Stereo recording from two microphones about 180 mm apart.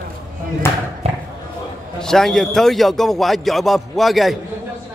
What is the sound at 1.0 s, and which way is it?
Basketball bounce, 35° right (ahead or behind).